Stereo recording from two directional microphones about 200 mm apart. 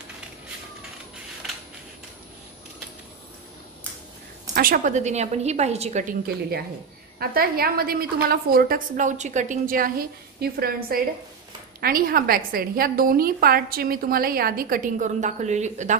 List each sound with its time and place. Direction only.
4.6 s a woman's voice: 40° right (ahead or behind)
7.2 s a woman's voice: 50° right (ahead or behind)